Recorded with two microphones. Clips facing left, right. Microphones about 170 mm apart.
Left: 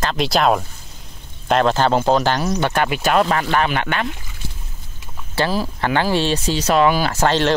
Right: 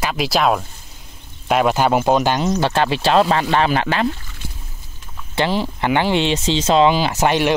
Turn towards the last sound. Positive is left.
turn(degrees=-15)  # may be behind; listen again after turning